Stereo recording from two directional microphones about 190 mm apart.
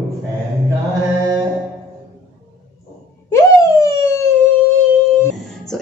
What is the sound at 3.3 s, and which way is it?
Police car, 15° left (ahead or behind).